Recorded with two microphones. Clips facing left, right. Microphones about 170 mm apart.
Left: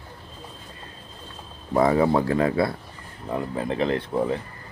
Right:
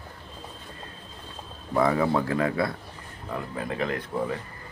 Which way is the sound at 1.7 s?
30° left (ahead or behind).